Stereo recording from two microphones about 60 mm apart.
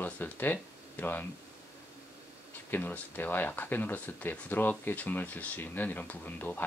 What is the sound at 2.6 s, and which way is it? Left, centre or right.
Speech, left.